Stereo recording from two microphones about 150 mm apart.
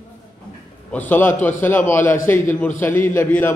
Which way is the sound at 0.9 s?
15° left (ahead or behind).